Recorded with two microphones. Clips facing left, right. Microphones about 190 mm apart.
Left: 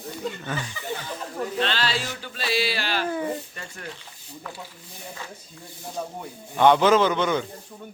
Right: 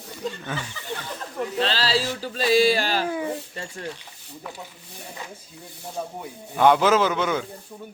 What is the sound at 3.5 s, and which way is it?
Speech, 30° right (ahead or behind).